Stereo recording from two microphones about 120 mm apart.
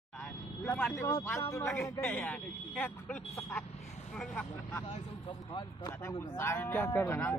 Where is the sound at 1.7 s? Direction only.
5° left (ahead or behind).